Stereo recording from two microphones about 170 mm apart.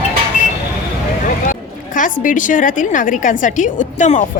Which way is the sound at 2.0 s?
50° left (ahead or behind).